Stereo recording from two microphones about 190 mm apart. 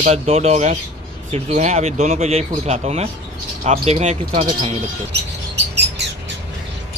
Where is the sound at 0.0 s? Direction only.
35° right (ahead or behind).